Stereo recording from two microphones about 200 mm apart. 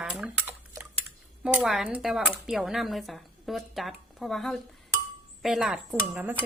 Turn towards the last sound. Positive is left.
turn(degrees=-10)  # may be behind; listen again after turning